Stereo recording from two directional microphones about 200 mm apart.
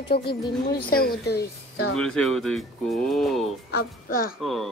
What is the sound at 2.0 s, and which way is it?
Speech, 5° left (ahead or behind).